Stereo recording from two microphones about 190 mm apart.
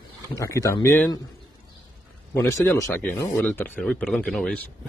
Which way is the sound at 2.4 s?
15° left (ahead or behind).